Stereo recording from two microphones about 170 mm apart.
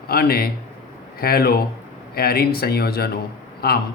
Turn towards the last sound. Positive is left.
turn(degrees=65)  # may be behind; listen again after turning